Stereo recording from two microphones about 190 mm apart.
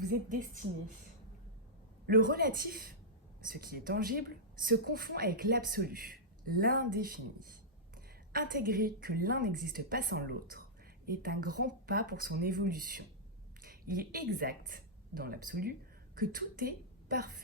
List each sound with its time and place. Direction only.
0.0 s speech: 50° right (ahead or behind)
2.0 s a woman's voice: 50° right (ahead or behind)